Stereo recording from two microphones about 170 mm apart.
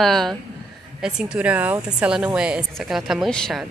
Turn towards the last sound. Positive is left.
turn(degrees=5)  # may be behind; listen again after turning